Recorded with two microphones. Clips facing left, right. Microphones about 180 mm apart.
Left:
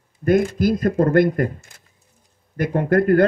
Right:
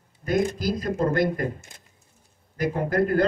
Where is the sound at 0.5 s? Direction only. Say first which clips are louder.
Left 8 dB; 55° left (ahead or behind).